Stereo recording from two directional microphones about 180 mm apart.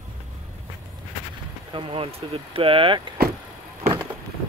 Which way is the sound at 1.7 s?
30° right (ahead or behind).